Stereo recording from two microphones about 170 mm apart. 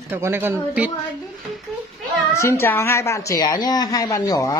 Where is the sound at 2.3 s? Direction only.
15° left (ahead or behind).